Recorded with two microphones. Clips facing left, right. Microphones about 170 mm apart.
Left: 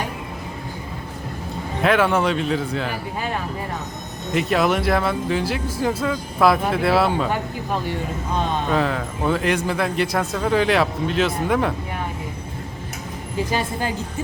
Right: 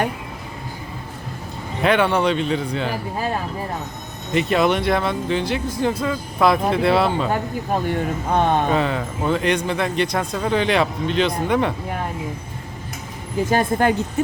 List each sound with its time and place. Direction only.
1.8 s a man's voice: centre (ahead or behind)
4.4 s a man's voice: centre (ahead or behind)
7.9 s speech: 60° right (ahead or behind)
8.7 s a man's voice: centre (ahead or behind)
13.5 s speech: 55° right (ahead or behind)